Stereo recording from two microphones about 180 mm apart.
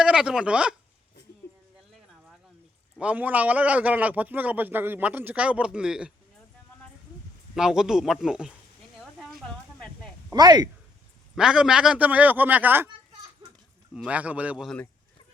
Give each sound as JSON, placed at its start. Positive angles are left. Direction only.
{"t": 0.0, "sound": "speech", "side_deg": -5}
{"t": 3.0, "sound": "a man's voice", "side_deg": -10}
{"t": 7.5, "sound": "speech", "side_deg": -5}
{"t": 9.0, "sound": "a sound", "side_deg": 0}
{"t": 10.3, "sound": "speech", "side_deg": -20}
{"t": 11.3, "sound": "a man's voice", "side_deg": -5}
{"t": 14.1, "sound": "a man's voice", "side_deg": -10}